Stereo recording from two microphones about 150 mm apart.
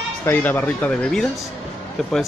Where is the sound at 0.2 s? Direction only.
15° left (ahead or behind).